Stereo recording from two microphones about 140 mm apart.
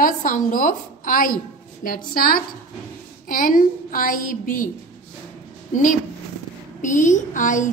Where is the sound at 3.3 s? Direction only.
80° left.